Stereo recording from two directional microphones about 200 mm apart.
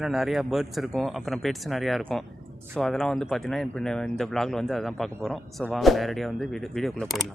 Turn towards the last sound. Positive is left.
turn(degrees=0)  # may be behind; listen again after turning